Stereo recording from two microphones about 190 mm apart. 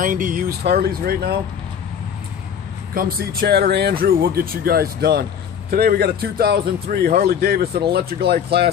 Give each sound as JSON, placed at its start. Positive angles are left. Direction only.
{"t": 0.0, "sound": "speech", "side_deg": -45}
{"t": 2.9, "sound": "speech", "side_deg": -50}